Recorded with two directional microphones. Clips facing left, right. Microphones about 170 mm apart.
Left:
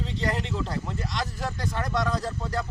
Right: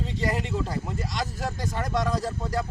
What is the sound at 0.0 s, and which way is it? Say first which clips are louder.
Speech: right 1 dB; 5° right (ahead or behind).